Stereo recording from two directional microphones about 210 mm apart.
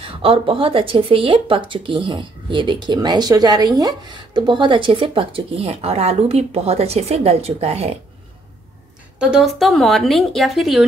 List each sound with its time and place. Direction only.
0.0 s speech: 25° right (ahead or behind)
9.2 s a woman's voice: centre (ahead or behind)